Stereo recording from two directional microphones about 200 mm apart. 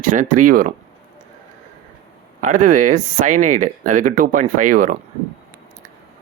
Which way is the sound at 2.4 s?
40° right (ahead or behind).